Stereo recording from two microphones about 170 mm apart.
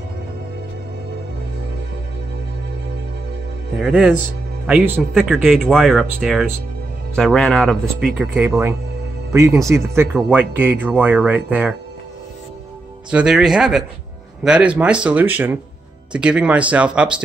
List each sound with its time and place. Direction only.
3.7 s speech: 5° right (ahead or behind)
8.5 s speech: 15° right (ahead or behind)
13.1 s speech: 5° right (ahead or behind)